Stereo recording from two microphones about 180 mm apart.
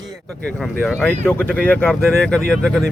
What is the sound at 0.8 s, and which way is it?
Speech, 5° left (ahead or behind).